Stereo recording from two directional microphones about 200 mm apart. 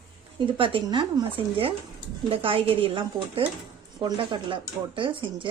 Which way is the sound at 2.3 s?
25° right (ahead or behind).